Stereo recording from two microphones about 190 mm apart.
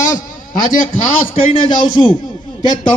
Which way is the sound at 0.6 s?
45° left (ahead or behind).